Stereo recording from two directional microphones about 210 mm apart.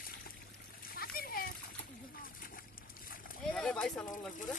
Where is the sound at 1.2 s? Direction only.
45° left (ahead or behind).